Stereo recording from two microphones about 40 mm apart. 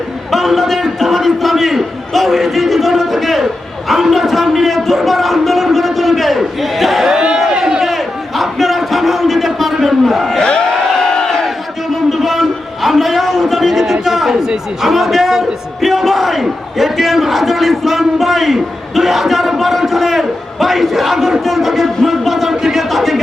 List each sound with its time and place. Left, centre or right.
0.3 s a man's voice: centre
7.1 s a sound: right
7.6 s crowd: centre
10.7 s crowd: centre
12.1 s a man's voice: centre
21.4 s music: centre